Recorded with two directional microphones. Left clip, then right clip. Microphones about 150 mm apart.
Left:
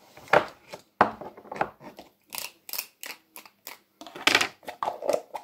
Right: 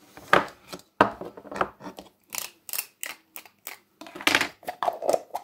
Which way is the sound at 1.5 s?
85° right.